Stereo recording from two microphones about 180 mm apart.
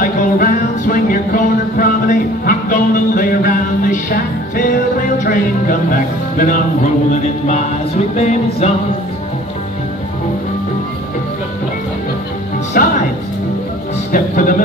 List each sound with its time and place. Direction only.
0.0 s music: 50° left (ahead or behind)
12.8 s music: 50° left (ahead or behind)
14.1 s music: 50° left (ahead or behind)